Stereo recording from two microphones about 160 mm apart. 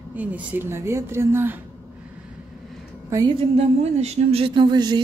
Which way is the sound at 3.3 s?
40° right (ahead or behind).